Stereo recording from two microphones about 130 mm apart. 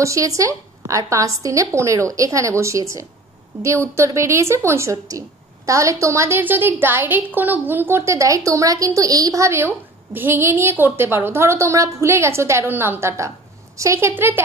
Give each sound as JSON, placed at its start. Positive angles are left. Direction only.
{"t": 0.0, "sound": "a woman's voice", "side_deg": -25}